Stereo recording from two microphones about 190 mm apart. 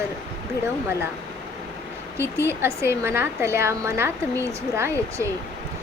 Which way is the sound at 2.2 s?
15° right (ahead or behind).